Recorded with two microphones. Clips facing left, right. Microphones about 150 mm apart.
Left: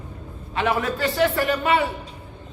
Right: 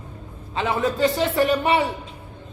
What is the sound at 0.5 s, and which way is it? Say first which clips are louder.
A man's voice: even; 25° right (ahead or behind).